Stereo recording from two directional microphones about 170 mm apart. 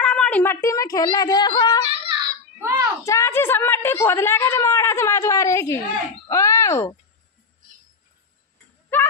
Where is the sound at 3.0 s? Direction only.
15° left (ahead or behind).